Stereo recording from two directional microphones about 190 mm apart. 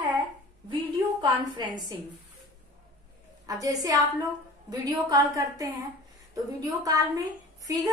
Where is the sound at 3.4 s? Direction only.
20° right (ahead or behind).